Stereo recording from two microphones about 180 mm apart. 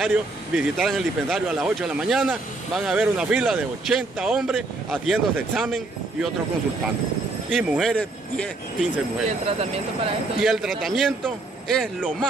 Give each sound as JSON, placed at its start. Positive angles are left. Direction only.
{"t": 0.0, "sound": "speech", "side_deg": 0}
{"t": 7.5, "sound": "speech", "side_deg": 0}
{"t": 9.5, "sound": "speech", "side_deg": -30}
{"t": 10.4, "sound": "speech", "side_deg": 0}